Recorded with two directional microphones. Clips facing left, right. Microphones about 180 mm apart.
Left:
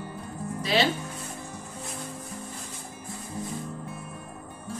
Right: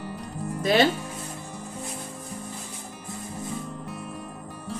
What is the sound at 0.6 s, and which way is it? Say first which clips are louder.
Speech: right 5 dB; 50° right (ahead or behind).